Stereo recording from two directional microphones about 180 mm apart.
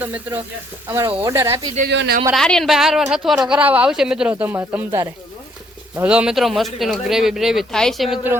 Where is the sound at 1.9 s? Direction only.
75° right (ahead or behind).